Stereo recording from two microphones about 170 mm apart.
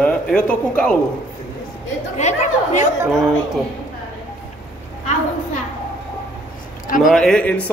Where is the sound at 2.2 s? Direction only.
40° left (ahead or behind).